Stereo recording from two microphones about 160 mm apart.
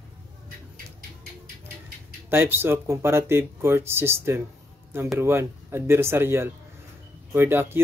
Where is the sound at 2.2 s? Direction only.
15° right (ahead or behind).